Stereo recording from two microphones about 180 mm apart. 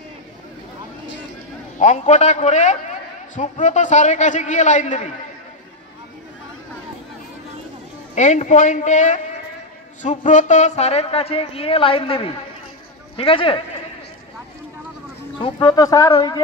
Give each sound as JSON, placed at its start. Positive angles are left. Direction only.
{"t": 1.8, "sound": "a man's voice", "side_deg": 40}
{"t": 8.1, "sound": "a man's voice", "side_deg": 40}
{"t": 15.3, "sound": "speech", "side_deg": 25}